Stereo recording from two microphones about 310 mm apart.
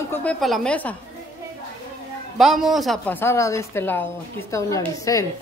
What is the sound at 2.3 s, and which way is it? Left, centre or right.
A woman's voice, centre.